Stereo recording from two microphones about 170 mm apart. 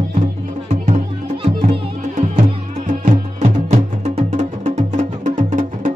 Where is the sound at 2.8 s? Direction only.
45° right (ahead or behind).